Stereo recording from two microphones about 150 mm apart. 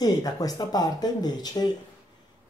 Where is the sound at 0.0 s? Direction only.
25° left (ahead or behind).